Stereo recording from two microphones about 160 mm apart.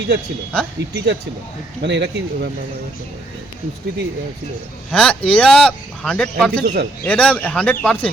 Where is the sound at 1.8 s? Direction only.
90° right.